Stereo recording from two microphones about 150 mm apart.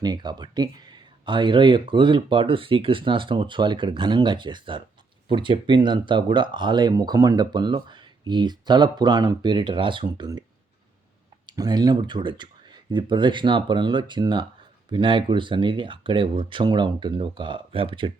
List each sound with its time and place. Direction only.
0.0 s speech: 30° right (ahead or behind)
11.4 s speech: 25° right (ahead or behind)